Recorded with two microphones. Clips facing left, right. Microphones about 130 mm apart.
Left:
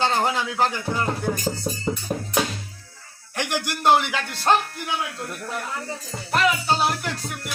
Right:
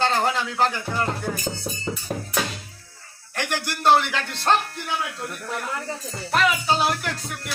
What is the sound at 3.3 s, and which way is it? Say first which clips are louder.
Speech: left 1 dB; 15° left (ahead or behind).